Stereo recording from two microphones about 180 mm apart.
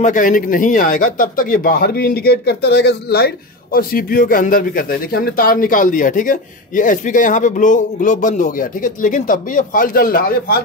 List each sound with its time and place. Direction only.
0.0 s a man's voice: 45° left (ahead or behind); by 3.3 s 65° left (ahead or behind)
3.7 s a man's voice: 55° left (ahead or behind)